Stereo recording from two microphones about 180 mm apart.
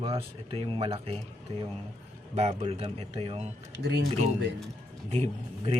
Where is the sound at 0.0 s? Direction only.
30° right (ahead or behind).